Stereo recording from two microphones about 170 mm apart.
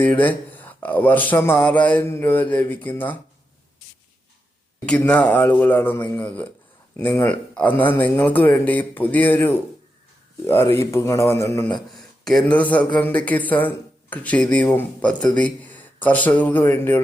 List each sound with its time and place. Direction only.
0.0 s a man's voice: 10° left (ahead or behind)
4.9 s a man's voice: 10° left (ahead or behind)
11.9 s a sound: centre (ahead or behind)
12.5 s a man's voice: 10° left (ahead or behind)